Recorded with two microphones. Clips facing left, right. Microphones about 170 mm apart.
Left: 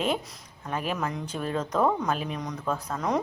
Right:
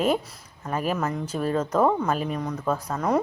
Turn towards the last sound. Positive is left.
turn(degrees=-5)  # may be behind; listen again after turning